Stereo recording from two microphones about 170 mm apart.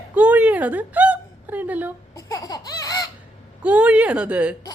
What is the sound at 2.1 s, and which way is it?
Baby cry, 20° left (ahead or behind).